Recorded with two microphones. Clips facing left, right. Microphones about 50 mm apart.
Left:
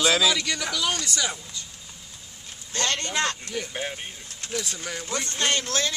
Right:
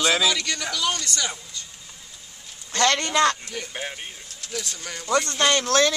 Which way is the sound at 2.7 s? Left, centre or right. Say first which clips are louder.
Right 6 dB; right.